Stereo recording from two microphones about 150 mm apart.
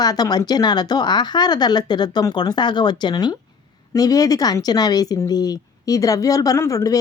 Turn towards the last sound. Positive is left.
turn(degrees=20)  # may be behind; listen again after turning